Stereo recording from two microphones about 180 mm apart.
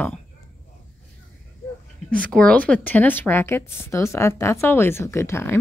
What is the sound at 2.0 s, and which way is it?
Speech, 5° left (ahead or behind).